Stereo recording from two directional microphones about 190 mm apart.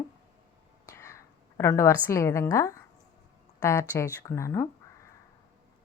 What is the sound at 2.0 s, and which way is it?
A woman's voice, 15° left (ahead or behind).